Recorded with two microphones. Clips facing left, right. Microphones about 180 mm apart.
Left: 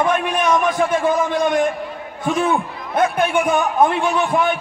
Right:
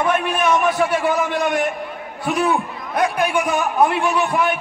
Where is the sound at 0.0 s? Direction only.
20° left (ahead or behind).